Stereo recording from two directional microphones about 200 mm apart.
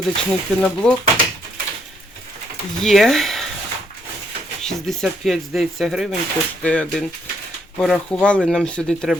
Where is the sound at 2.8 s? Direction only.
Centre (ahead or behind).